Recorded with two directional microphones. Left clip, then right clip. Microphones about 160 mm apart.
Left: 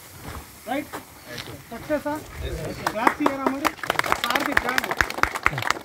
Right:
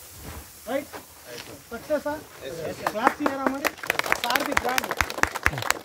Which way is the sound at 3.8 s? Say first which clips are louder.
Left 1 dB; 15° left (ahead or behind).